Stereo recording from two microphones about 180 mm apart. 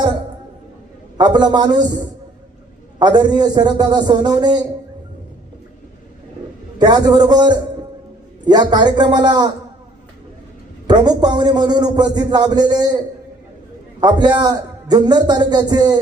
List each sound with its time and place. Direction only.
1.2 s a man's voice: 25° right (ahead or behind)
3.0 s a man's voice: 25° right (ahead or behind)
6.7 s a man's voice: 25° right (ahead or behind)
10.8 s a man's voice: 25° right (ahead or behind)
14.0 s a man's voice: 25° right (ahead or behind)